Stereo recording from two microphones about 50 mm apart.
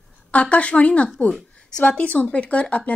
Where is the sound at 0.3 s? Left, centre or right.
Left.